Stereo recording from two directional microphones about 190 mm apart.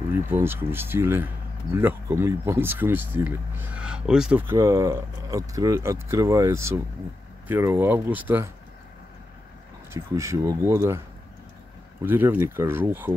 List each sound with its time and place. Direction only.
0.3 s speech: 10° right (ahead or behind)
9.9 s speech: 15° right (ahead or behind)
12.0 s speech: 10° right (ahead or behind)